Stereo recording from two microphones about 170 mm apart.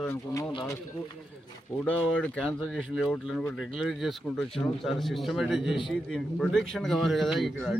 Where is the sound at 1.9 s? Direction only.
5° left (ahead or behind).